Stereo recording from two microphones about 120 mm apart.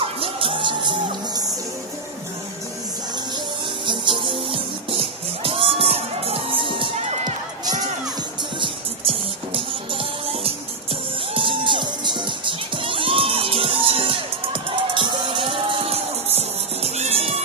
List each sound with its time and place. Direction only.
0.0 s music: 50° right (ahead or behind)
3.8 s music: 40° right (ahead or behind)
7.0 s run: 65° right (ahead or behind)
8.5 s music: 50° right (ahead or behind)
11.3 s music: 45° right (ahead or behind)